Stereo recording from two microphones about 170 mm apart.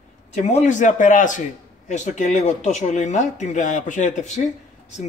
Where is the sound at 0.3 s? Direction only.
45° left (ahead or behind).